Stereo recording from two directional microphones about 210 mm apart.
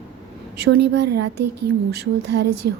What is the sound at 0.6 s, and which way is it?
A woman's voice, 50° right (ahead or behind).